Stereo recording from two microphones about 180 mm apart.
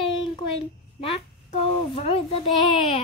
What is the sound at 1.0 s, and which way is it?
A child's voice, 35° left (ahead or behind).